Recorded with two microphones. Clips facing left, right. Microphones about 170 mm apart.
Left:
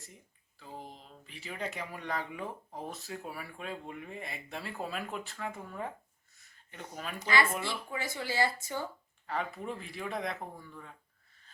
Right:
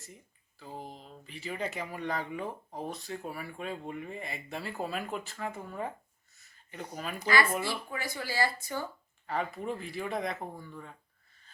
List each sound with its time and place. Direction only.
0.6 s speech: centre (ahead or behind)
6.4 s a sound: centre (ahead or behind)
7.2 s speech: 20° left (ahead or behind)
7.5 s speech: 10° right (ahead or behind)
7.9 s speech: 20° left (ahead or behind)
9.2 s speech: centre (ahead or behind)